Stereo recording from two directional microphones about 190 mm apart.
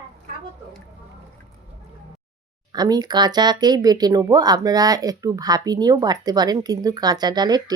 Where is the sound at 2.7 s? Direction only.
20° right (ahead or behind).